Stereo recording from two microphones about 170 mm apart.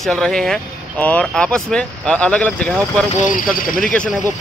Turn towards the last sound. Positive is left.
turn(degrees=5)  # may be behind; listen again after turning